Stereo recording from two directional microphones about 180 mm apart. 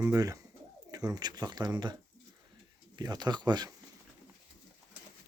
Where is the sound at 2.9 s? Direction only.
20° right (ahead or behind).